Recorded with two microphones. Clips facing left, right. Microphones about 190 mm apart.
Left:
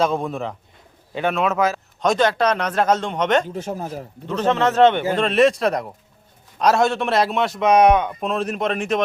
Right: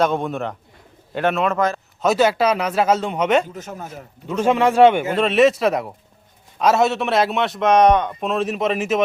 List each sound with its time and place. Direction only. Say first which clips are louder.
0.0 s a man's voice: right 1 dB; centre (ahead or behind)
3.5 s speech: left 5 dB; 30° left (ahead or behind)
4.3 s a man's voice: right 2 dB; 10° right (ahead or behind)